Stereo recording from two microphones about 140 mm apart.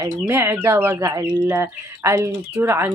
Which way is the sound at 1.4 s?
15° right (ahead or behind).